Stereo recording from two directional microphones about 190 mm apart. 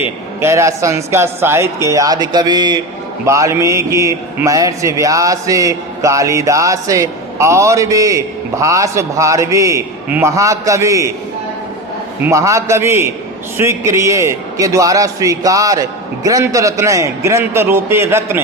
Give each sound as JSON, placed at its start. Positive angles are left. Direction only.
{"t": 0.0, "sound": "a man's voice", "side_deg": -15}
{"t": 12.2, "sound": "a man's voice", "side_deg": -15}